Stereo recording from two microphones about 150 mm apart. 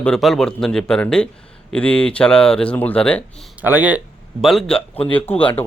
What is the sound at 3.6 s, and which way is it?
Speech, 10° right (ahead or behind).